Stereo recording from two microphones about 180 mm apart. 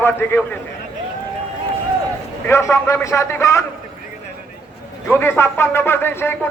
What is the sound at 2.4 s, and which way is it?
Speech, 15° left (ahead or behind).